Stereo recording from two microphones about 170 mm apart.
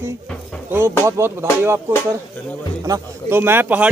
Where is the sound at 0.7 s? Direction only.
15° right (ahead or behind).